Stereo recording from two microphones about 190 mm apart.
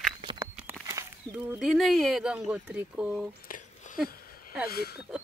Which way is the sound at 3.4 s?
45° left (ahead or behind).